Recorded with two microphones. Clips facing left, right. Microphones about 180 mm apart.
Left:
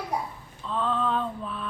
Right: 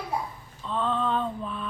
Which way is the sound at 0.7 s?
Centre (ahead or behind).